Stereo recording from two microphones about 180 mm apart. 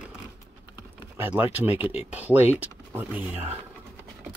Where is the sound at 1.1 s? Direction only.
10° right (ahead or behind).